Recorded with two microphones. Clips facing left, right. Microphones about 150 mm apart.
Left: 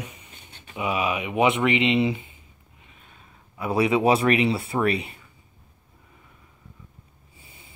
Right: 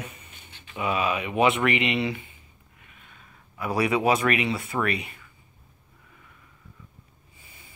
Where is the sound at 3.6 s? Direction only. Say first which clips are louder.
Left 3 dB; 25° left (ahead or behind).